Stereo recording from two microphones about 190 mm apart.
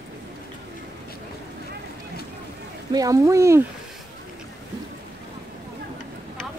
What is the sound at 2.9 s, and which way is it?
Speech, 15° right (ahead or behind).